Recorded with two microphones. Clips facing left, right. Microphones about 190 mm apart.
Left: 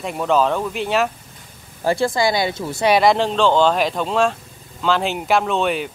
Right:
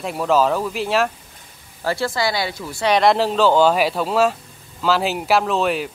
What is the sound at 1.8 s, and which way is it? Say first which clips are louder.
Speech: left 3 dB; 15° left (ahead or behind).